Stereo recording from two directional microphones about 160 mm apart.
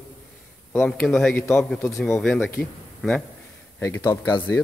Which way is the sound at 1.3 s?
15° left (ahead or behind).